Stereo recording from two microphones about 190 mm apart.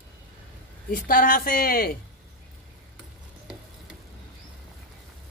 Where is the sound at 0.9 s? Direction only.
50° left (ahead or behind).